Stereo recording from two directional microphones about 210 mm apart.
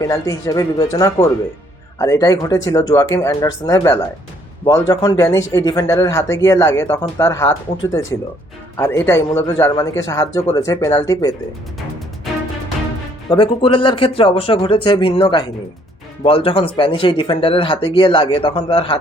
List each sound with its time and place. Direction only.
0.0 s speech: 15° left (ahead or behind)
13.3 s speech: 25° left (ahead or behind)